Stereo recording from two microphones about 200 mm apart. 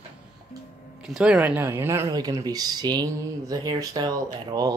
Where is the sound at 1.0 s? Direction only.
5° right (ahead or behind).